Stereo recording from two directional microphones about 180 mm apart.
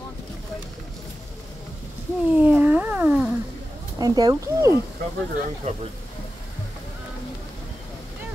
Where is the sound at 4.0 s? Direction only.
20° right (ahead or behind).